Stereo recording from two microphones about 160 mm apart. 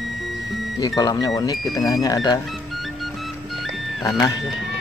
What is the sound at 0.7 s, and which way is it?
Speech, 25° left (ahead or behind).